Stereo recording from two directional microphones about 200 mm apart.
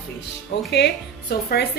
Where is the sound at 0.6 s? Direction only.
55° left (ahead or behind).